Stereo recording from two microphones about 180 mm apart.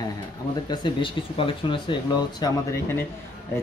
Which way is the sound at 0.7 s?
25° left (ahead or behind).